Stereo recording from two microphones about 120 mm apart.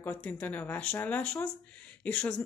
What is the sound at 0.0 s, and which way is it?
A woman's voice, 15° left (ahead or behind).